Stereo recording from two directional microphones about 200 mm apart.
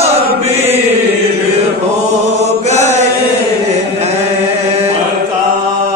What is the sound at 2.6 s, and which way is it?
Chant, 35° right (ahead or behind).